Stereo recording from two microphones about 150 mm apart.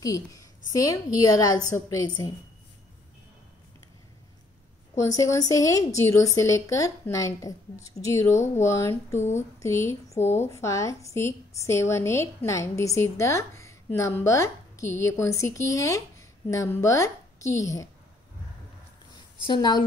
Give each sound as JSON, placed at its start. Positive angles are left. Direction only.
{"t": 0.0, "sound": "a woman's voice", "side_deg": 20}
{"t": 4.9, "sound": "a woman's voice", "side_deg": 20}
{"t": 19.4, "sound": "a woman's voice", "side_deg": 30}